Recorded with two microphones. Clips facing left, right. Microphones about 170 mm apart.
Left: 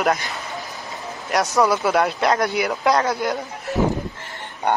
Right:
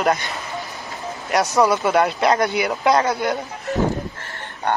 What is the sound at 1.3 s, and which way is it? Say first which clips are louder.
Speech: right 1 dB; centre (ahead or behind).